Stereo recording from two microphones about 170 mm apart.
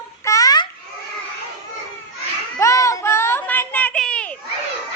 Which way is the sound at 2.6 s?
20° left (ahead or behind).